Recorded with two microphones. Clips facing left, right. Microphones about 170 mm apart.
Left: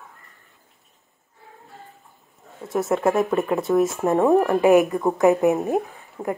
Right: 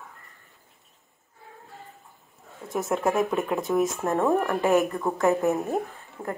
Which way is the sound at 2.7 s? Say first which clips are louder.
Left 4 dB; centre (ahead or behind).